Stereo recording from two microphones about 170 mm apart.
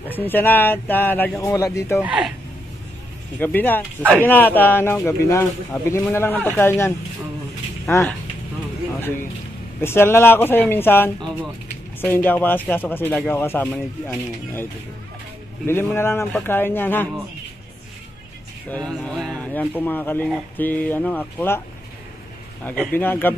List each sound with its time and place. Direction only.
0.2 s speech: 10° left (ahead or behind)
2.0 s speech: 5° right (ahead or behind)
3.3 s speech: 10° left (ahead or behind)
9.8 s speech: 15° left (ahead or behind)
19.0 s speech: 5° left (ahead or behind)
22.7 s speech: 10° left (ahead or behind)